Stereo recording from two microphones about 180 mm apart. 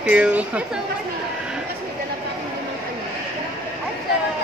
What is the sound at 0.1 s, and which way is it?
Speech, 10° right (ahead or behind).